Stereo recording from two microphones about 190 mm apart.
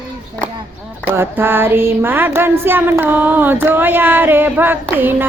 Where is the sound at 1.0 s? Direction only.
10° right (ahead or behind).